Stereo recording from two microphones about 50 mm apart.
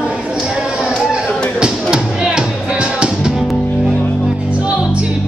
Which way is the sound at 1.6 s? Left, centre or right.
Centre.